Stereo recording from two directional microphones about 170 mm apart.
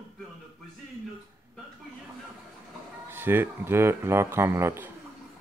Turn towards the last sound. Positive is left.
turn(degrees=-15)  # may be behind; listen again after turning